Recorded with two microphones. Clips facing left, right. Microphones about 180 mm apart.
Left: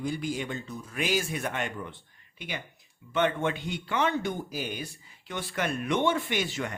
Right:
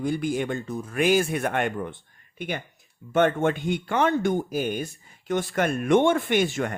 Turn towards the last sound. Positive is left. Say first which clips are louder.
# right 7 dB
turn(degrees=-50)  # may be behind; listen again after turning